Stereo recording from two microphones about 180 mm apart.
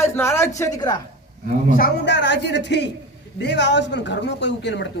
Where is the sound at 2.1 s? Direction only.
75° left (ahead or behind).